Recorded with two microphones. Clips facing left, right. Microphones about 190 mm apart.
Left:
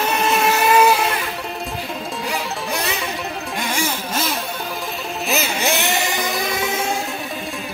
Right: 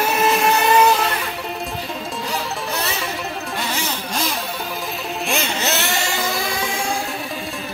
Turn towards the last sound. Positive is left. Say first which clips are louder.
# left 2 dB
turn(degrees=20)  # may be behind; listen again after turning